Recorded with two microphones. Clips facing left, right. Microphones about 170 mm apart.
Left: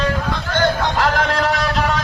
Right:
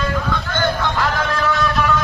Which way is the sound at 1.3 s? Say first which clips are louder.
Even; 35° left (ahead or behind).